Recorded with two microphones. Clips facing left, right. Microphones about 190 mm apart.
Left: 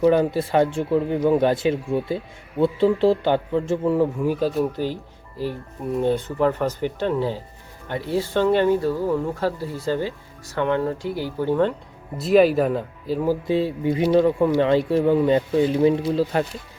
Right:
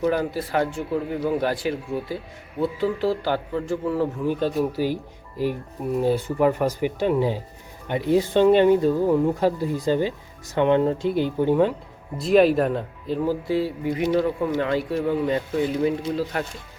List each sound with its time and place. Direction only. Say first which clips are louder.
0.0 s speech: left 5 dB; 25° left (ahead or behind)
4.4 s speech: left 1 dB; centre (ahead or behind); by 11.7 s 15° right (ahead or behind)
12.1 s speech: left 1 dB; centre (ahead or behind)
13.5 s speech: left 2 dB; 25° left (ahead or behind)